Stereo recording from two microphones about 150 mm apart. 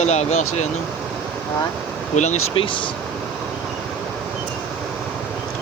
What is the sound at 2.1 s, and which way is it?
Speech, 50° left (ahead or behind).